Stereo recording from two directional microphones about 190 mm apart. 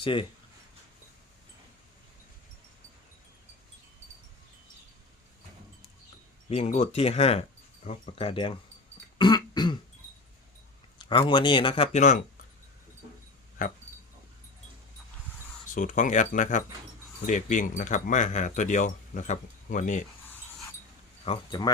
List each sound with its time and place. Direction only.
0.0 s speech: 25° left (ahead or behind)
6.5 s speech: 30° left (ahead or behind)
9.1 s throat clearing: 25° left (ahead or behind)
10.9 s speech: 25° left (ahead or behind)
13.6 s speech: 45° left (ahead or behind)
15.7 s speech: 45° left (ahead or behind)
21.2 s speech: 20° left (ahead or behind)